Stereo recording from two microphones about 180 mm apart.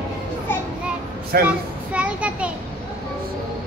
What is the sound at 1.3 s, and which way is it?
Speech, 60° right (ahead or behind).